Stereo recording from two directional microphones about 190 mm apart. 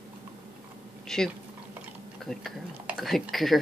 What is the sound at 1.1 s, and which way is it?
Speech, centre (ahead or behind).